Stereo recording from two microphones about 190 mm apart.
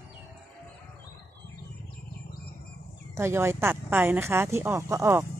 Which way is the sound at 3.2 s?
15° right (ahead or behind).